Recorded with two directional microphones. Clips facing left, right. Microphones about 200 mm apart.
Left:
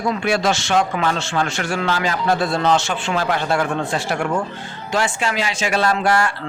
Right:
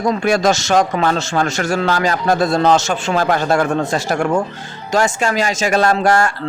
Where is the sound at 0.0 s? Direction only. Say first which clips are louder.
Right 4 dB; 40° right (ahead or behind).